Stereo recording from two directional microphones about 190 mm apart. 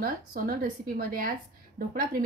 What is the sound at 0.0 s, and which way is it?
Speech, 50° right (ahead or behind).